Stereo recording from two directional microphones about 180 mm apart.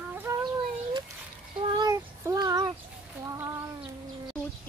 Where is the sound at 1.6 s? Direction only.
25° right (ahead or behind).